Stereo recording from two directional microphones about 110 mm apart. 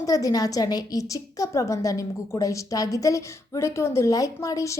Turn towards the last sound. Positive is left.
turn(degrees=30)  # may be behind; listen again after turning